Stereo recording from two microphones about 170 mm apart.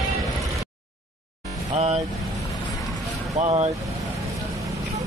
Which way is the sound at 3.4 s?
35° right (ahead or behind).